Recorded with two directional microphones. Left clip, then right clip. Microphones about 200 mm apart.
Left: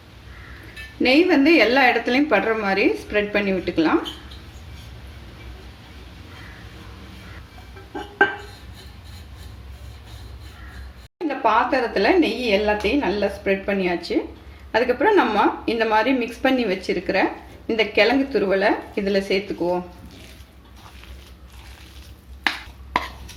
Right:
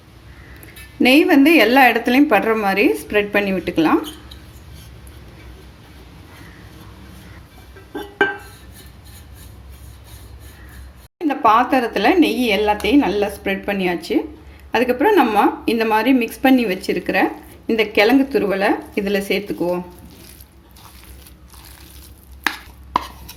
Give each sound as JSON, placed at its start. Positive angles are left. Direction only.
{"t": 1.0, "sound": "speech", "side_deg": -45}
{"t": 11.3, "sound": "speech", "side_deg": -50}